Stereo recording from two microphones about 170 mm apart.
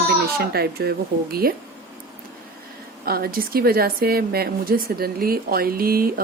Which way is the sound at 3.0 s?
65° right (ahead or behind).